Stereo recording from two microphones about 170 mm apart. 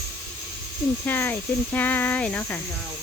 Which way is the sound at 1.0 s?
10° left (ahead or behind).